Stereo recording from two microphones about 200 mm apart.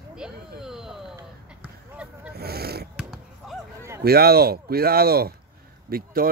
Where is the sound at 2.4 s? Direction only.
50° right (ahead or behind).